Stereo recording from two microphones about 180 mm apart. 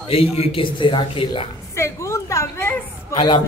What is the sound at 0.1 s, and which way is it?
A man's voice, 30° left (ahead or behind).